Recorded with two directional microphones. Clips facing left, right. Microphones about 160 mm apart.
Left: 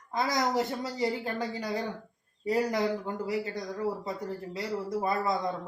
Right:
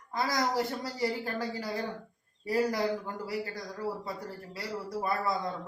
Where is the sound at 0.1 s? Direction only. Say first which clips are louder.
Left 2 dB; 20° left (ahead or behind).